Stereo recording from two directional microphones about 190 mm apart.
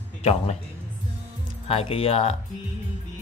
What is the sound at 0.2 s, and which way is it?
Speech, 35° left (ahead or behind).